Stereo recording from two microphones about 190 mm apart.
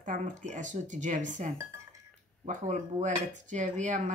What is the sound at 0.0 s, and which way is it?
Speech, 40° right (ahead or behind).